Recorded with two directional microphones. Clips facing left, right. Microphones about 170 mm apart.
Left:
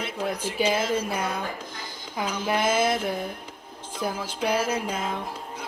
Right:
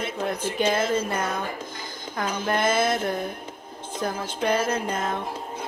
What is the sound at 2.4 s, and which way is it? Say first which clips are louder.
Speech: even; 5° left (ahead or behind).